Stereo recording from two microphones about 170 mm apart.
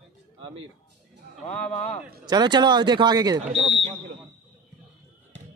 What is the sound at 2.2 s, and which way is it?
Speech, 25° right (ahead or behind).